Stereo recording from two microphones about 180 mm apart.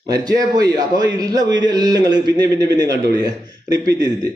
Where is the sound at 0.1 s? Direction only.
20° right (ahead or behind).